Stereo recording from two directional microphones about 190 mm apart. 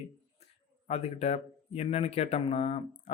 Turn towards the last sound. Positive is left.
turn(degrees=35)  # may be behind; listen again after turning